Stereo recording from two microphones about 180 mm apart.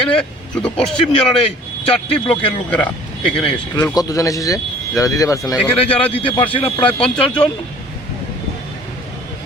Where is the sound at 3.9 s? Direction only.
20° left (ahead or behind).